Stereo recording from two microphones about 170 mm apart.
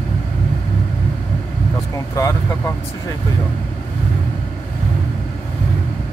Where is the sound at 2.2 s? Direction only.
20° left (ahead or behind).